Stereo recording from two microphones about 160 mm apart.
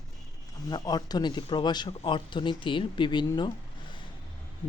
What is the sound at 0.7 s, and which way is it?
A woman's voice, 25° left (ahead or behind).